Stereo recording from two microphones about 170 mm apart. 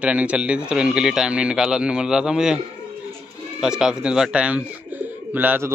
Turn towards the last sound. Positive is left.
turn(degrees=-10)  # may be behind; listen again after turning